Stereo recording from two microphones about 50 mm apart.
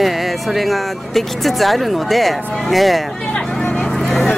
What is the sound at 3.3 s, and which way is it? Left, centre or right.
Vehicle, left.